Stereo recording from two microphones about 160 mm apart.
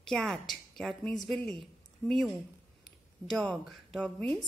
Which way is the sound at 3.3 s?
5° left (ahead or behind).